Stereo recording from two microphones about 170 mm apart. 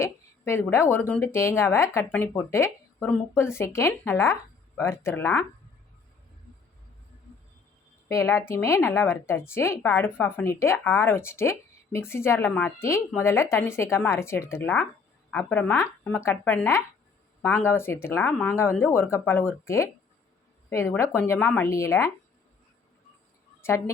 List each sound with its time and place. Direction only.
0.0 s a sound: 15° left (ahead or behind)
0.7 s speech: 15° left (ahead or behind)
8.0 s speech: 15° left (ahead or behind)
23.6 s a woman's voice: 15° left (ahead or behind)